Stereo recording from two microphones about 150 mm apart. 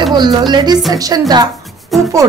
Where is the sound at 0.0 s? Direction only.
30° right (ahead or behind).